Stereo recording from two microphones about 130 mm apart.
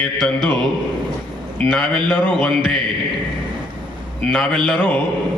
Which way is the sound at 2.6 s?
40° right (ahead or behind).